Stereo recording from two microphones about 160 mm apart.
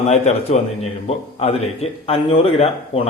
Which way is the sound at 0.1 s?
45° left (ahead or behind).